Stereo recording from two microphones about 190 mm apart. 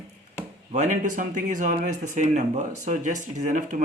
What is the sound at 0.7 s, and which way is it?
Speech, 40° right (ahead or behind).